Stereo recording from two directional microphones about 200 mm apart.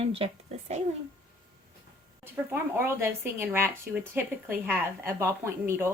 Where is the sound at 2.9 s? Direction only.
10° right (ahead or behind).